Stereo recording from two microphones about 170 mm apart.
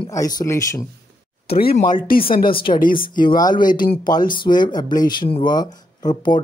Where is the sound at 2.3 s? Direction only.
60° left (ahead or behind).